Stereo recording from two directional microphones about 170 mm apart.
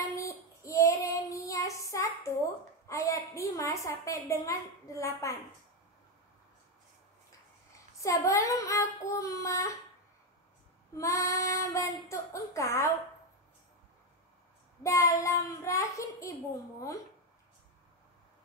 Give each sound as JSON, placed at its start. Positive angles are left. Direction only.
{"t": 0.1, "sound": "child singing", "side_deg": 15}
{"t": 8.0, "sound": "child singing", "side_deg": 20}
{"t": 11.0, "sound": "child singing", "side_deg": 20}
{"t": 14.8, "sound": "a child's voice", "side_deg": 20}